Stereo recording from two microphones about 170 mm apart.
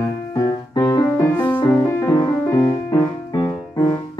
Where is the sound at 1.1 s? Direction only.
10° left (ahead or behind).